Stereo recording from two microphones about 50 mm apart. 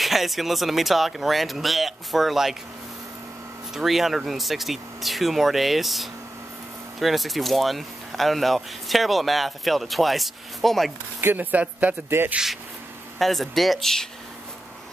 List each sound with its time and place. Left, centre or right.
0.0 s speech: centre
3.7 s speech: centre
11.3 s speech: right
13.2 s speech: centre